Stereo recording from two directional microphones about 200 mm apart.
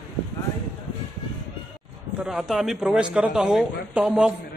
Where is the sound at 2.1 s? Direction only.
5° right (ahead or behind).